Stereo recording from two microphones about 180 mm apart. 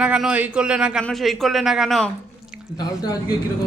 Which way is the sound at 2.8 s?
20° left (ahead or behind).